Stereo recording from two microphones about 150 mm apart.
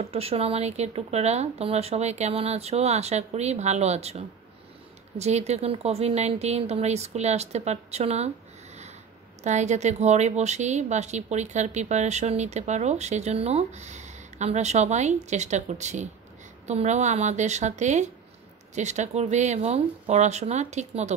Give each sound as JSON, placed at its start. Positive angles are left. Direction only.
{"t": 0.0, "sound": "a woman's voice", "side_deg": -40}
{"t": 9.4, "sound": "a woman's voice", "side_deg": -50}